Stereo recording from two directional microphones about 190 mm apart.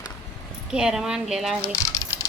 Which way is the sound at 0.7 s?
5° right (ahead or behind).